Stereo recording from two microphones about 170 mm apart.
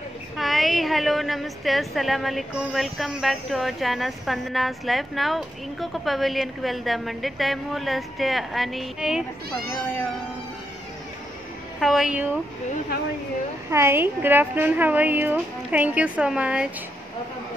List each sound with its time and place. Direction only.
0.4 s a woman's voice: centre (ahead or behind)
11.8 s a woman's voice: centre (ahead or behind)
13.7 s a woman's voice: 15° right (ahead or behind)